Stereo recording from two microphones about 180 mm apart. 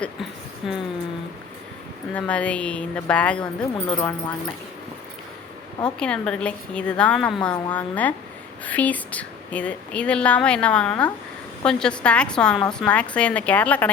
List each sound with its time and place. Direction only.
0.6 s a woman's voice: centre (ahead or behind)
2.1 s speech: 5° left (ahead or behind)
6.0 s a woman's voice: 5° left (ahead or behind)